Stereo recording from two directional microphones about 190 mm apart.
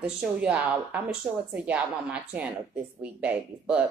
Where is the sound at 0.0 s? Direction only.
5° right (ahead or behind).